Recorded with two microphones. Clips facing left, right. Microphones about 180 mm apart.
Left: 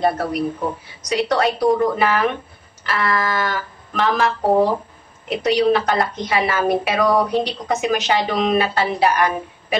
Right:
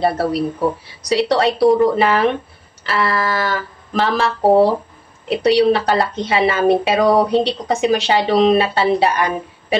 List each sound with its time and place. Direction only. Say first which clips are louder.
0.0 s a woman's voice: right 2 dB; 35° right (ahead or behind)